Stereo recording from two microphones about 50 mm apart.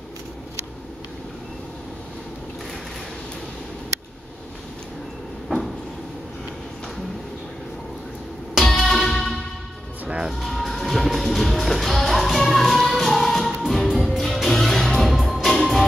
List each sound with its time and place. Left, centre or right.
8.5 s music: centre
10.0 s music: centre
10.4 s music: centre